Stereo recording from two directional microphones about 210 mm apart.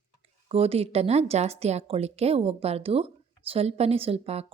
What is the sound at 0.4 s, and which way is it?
A woman's voice, 30° right (ahead or behind).